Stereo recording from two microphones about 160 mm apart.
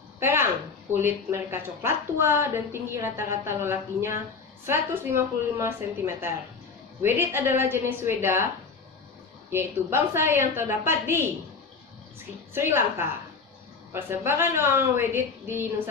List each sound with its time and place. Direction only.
0.2 s a sound: 15° right (ahead or behind)
0.9 s a woman's voice: 15° right (ahead or behind)
9.5 s a woman's voice: 15° right (ahead or behind)
12.5 s a woman's voice: 15° right (ahead or behind)